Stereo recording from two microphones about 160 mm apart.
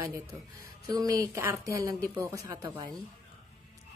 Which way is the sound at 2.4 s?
20° right (ahead or behind).